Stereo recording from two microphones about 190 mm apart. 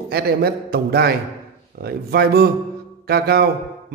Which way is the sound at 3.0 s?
55° right (ahead or behind).